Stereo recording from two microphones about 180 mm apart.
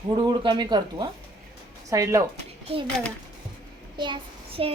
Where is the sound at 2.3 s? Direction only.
30° right (ahead or behind).